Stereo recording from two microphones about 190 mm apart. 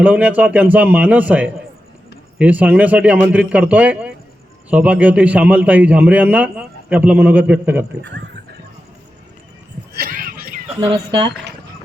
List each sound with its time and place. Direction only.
0.0 s a man's voice: 5° right (ahead or behind)
8.0 s speech: 65° right (ahead or behind)
10.0 s a sound: 45° right (ahead or behind)
10.7 s speech: 25° right (ahead or behind)